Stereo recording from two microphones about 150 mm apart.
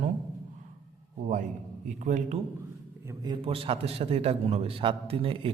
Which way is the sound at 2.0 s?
55° right (ahead or behind).